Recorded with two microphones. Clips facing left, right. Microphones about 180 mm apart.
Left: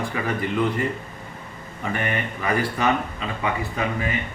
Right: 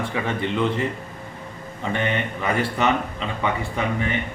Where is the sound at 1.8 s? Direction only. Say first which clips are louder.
Right 2 dB; 25° right (ahead or behind).